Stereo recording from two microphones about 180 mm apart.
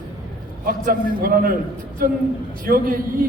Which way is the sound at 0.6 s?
55° right (ahead or behind).